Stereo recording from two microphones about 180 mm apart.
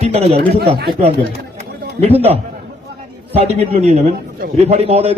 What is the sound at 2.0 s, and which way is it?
A man's voice, 35° right (ahead or behind).